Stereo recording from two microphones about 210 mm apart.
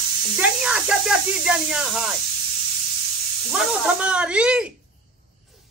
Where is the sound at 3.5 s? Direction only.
Centre (ahead or behind).